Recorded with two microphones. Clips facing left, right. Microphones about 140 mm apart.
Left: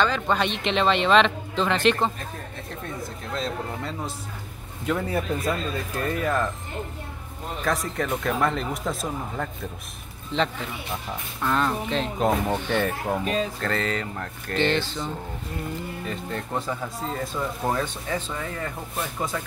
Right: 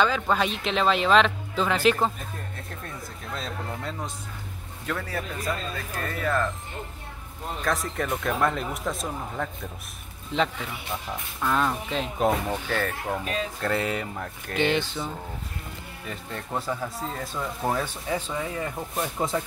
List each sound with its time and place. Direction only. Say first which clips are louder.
0.0 s speech: even; 5° right (ahead or behind)
3.3 s speech: left 4 dB; centre (ahead or behind)
4.8 s speech: left 6 dB; 20° left (ahead or behind)
7.6 s speech: left 2 dB; centre (ahead or behind)
11.4 s speech: left 1 dB; 5° right (ahead or behind)
13.2 s speech: left 4 dB; 35° left (ahead or behind)
13.6 s speech: even; 10° right (ahead or behind)